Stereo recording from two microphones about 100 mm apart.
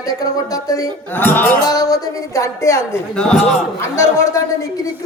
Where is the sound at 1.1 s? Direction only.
20° left (ahead or behind).